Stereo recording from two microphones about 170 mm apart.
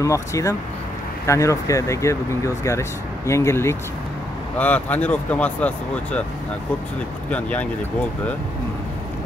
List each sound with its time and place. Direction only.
0.0 s speech: 20° left (ahead or behind)
7.2 s speech: 10° left (ahead or behind)